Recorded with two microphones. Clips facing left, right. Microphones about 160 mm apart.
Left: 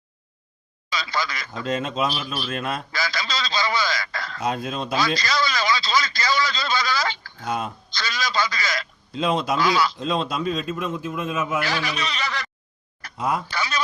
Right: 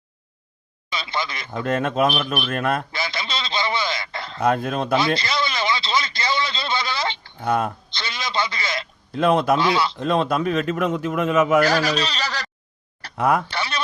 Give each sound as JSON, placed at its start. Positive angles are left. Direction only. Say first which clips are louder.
{"t": 0.9, "sound": "speech", "louder": "even", "side_deg": -25}
{"t": 1.5, "sound": "speech", "louder": "right 4 dB", "side_deg": -60}
{"t": 2.9, "sound": "speech", "louder": "even", "side_deg": -25}
{"t": 4.4, "sound": "speech", "louder": "right 6 dB", "side_deg": -55}
{"t": 4.9, "sound": "speech", "louder": "left 1 dB", "side_deg": -25}
{"t": 7.4, "sound": "speech", "louder": "right 5 dB", "side_deg": -60}
{"t": 7.9, "sound": "speech", "louder": "left 2 dB", "side_deg": -25}
{"t": 9.1, "sound": "speech", "louder": "right 5 dB", "side_deg": -60}
{"t": 9.6, "sound": "speech", "louder": "right 1 dB", "side_deg": -25}
{"t": 10.0, "sound": "a man's voice", "louder": "right 4 dB", "side_deg": -60}
{"t": 11.6, "sound": "speech", "louder": "right 7 dB", "side_deg": -40}
{"t": 13.1, "sound": "speech", "louder": "right 5 dB", "side_deg": -65}
{"t": 13.5, "sound": "speech", "louder": "even", "side_deg": -30}